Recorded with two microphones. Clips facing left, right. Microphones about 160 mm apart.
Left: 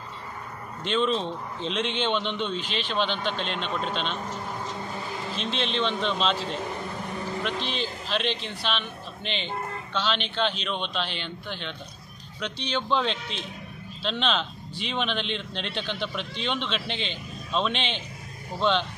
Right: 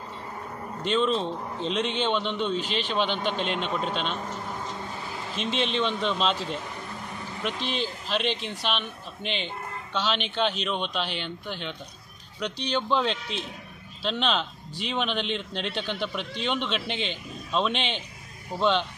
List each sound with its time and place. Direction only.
0.8 s a man's voice: 5° right (ahead or behind)
5.3 s a man's voice: 10° right (ahead or behind)
7.6 s a man's voice: 50° right (ahead or behind)
8.1 s a man's voice: 10° right (ahead or behind)